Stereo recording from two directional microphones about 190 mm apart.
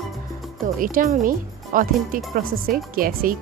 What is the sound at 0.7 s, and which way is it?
Speech, 45° right (ahead or behind).